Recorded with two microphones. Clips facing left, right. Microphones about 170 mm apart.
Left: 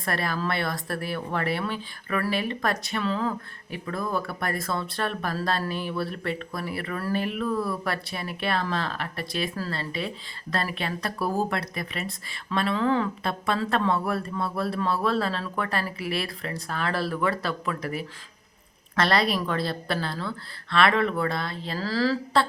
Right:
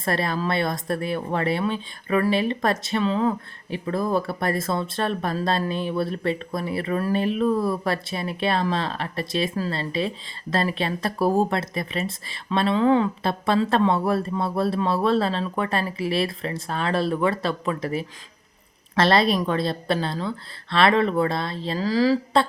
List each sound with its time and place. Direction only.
0.0 s speech: 25° right (ahead or behind)